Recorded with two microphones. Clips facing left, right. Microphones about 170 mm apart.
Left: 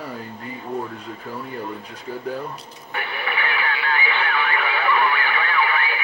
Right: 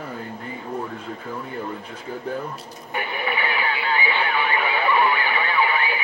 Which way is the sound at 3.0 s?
15° right (ahead or behind).